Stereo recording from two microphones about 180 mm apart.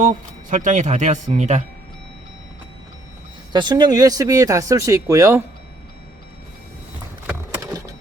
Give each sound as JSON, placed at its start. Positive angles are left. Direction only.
{"t": 0.5, "sound": "speech", "side_deg": -45}
{"t": 3.5, "sound": "speech", "side_deg": -25}
{"t": 7.3, "sound": "clip-clop", "side_deg": -15}